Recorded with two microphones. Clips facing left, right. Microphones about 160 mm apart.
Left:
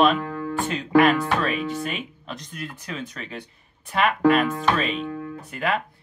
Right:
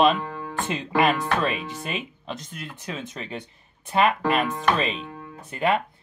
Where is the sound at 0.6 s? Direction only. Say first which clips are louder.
Left 4 dB; centre (ahead or behind).